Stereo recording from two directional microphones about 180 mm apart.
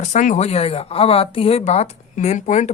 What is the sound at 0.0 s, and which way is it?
Speech, 45° left (ahead or behind).